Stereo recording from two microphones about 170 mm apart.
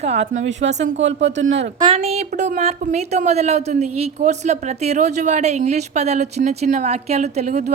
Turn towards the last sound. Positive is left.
turn(degrees=-45)  # may be behind; listen again after turning